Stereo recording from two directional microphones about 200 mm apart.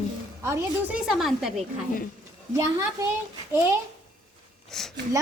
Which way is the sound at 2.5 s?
15° right (ahead or behind).